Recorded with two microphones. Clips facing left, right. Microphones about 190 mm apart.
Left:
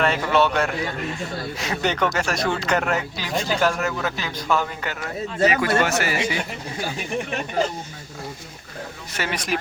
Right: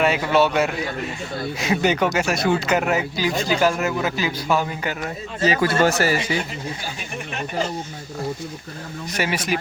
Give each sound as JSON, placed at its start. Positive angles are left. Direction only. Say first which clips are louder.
{"t": 0.0, "sound": "speech", "louder": "right 2 dB", "side_deg": -5}
{"t": 5.5, "sound": "speech", "louder": "right 4 dB", "side_deg": -35}
{"t": 9.1, "sound": "speech", "louder": "right 3 dB", "side_deg": -10}